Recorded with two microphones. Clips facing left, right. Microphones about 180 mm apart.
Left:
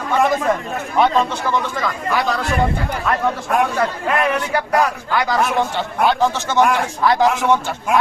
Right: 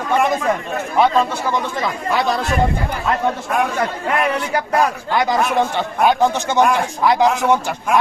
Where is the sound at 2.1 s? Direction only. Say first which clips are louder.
Right 2 dB; 25° right (ahead or behind).